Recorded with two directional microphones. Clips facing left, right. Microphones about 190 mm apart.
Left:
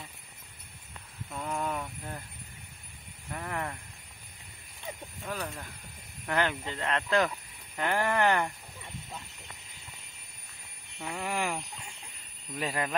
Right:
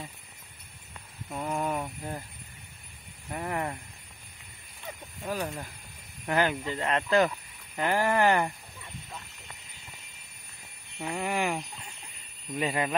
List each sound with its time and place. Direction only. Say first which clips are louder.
1.3 s a sound: right 3 dB; 20° right (ahead or behind)
3.3 s speech: right 4 dB; 20° right (ahead or behind)
5.2 s speech: right 5 dB; 20° right (ahead or behind)
6.2 s speech: right 3 dB; 10° right (ahead or behind)
11.0 s speech: right 3 dB; 5° right (ahead or behind)